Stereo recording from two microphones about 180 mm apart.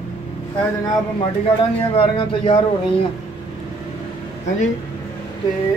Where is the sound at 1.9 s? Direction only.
30° left (ahead or behind).